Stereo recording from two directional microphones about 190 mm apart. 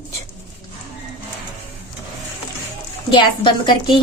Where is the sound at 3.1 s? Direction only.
25° left (ahead or behind).